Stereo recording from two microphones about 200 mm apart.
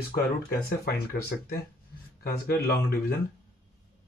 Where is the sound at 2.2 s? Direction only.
50° left (ahead or behind).